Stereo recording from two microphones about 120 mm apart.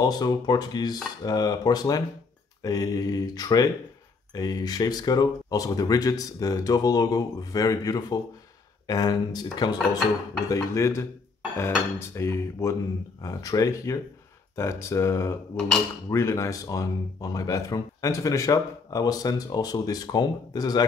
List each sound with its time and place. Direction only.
0.0 s speech: 35° left (ahead or behind)
9.8 s speech: centre (ahead or behind)
10.5 s speech: 25° left (ahead or behind)
12.2 s speech: 25° left (ahead or behind)